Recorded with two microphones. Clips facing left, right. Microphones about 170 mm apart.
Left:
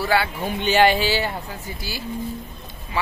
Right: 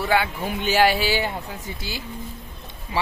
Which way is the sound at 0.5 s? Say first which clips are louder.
Left 2 dB; 5° right (ahead or behind).